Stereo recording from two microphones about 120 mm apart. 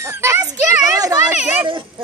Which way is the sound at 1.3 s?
10° right (ahead or behind).